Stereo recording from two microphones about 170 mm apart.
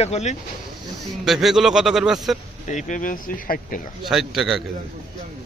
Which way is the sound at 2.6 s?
45° left (ahead or behind).